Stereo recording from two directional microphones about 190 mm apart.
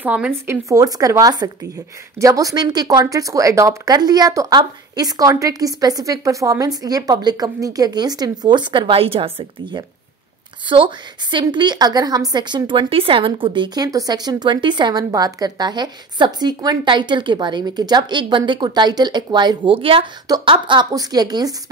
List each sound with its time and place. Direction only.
0.0 s a woman's voice: 10° right (ahead or behind)